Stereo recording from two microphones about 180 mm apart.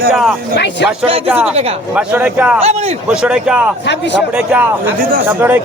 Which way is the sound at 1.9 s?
10° right (ahead or behind).